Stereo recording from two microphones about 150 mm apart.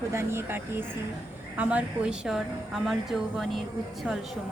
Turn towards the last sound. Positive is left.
turn(degrees=0)  # may be behind; listen again after turning